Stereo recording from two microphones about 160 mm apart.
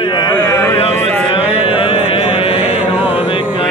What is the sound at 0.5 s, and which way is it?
Speech, 15° left (ahead or behind).